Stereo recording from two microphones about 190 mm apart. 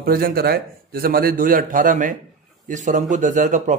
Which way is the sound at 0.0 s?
50° right (ahead or behind).